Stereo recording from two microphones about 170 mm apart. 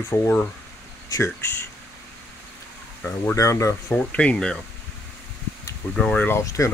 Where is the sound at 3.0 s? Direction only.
15° left (ahead or behind).